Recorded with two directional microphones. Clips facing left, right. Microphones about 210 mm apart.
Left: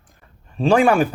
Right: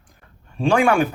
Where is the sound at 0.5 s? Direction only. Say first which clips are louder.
Left 2 dB; 35° left (ahead or behind).